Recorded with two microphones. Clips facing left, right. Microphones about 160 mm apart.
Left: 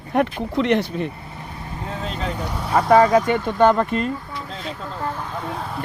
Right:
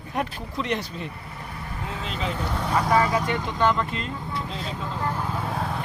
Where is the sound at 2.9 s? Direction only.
55° left (ahead or behind).